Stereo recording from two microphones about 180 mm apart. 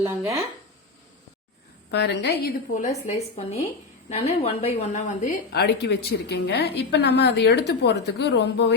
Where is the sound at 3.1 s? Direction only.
35° left (ahead or behind).